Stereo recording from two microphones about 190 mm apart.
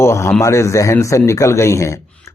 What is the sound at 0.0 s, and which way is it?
Speech, 15° left (ahead or behind).